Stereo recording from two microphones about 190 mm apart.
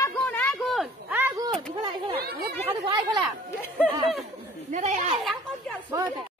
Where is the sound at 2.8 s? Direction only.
25° right (ahead or behind).